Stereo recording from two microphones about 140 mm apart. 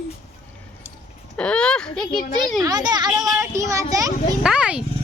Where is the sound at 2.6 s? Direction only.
30° right (ahead or behind).